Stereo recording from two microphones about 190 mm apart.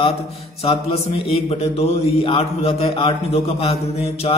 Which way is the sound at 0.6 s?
30° left (ahead or behind).